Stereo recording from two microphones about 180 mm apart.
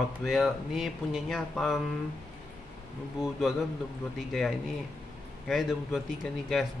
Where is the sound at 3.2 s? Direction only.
Centre (ahead or behind).